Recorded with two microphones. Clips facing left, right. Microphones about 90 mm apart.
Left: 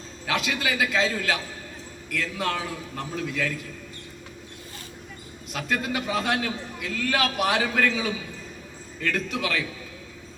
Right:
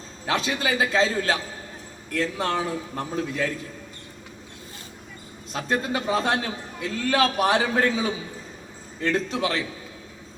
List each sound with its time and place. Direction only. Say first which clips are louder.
0.3 s a man's voice: right 2 dB; 30° right (ahead or behind)
5.5 s a man's voice: right 2 dB; 30° right (ahead or behind)